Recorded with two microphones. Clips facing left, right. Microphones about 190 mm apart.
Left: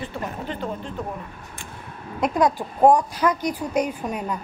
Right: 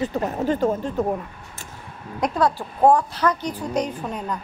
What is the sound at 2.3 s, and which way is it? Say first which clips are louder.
A woman's voice: left 2 dB; 15° left (ahead or behind).